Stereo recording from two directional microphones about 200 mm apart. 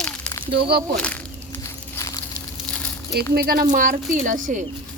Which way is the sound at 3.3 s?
50° right (ahead or behind).